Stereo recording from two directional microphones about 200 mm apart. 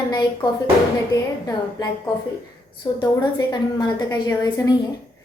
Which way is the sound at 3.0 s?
20° left (ahead or behind).